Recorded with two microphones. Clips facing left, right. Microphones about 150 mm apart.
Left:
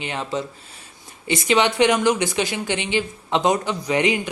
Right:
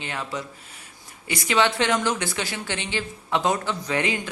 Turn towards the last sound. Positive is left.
turn(degrees=15)  # may be behind; listen again after turning